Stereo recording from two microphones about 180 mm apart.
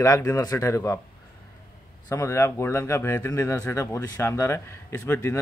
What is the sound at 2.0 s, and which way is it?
Speech, 15° left (ahead or behind).